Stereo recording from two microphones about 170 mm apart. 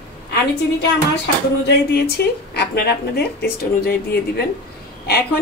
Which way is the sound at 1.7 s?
70° left (ahead or behind).